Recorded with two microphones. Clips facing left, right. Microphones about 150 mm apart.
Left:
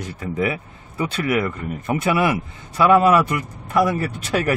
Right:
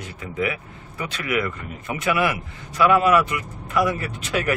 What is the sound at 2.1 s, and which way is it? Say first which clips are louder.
A man's voice: left 1 dB; 30° left (ahead or behind).